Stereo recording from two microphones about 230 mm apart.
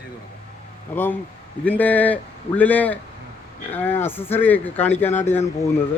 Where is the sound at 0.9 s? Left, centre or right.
Centre.